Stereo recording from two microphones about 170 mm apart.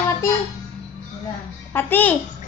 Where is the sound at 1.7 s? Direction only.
10° left (ahead or behind).